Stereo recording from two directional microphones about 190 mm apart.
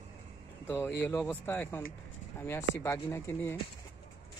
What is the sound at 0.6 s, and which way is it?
Speech, 10° left (ahead or behind).